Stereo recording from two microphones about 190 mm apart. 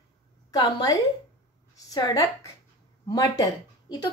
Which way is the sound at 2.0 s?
20° left (ahead or behind).